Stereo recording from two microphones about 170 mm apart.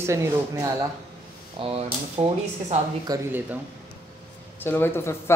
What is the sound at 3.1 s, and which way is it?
Speech, 20° right (ahead or behind).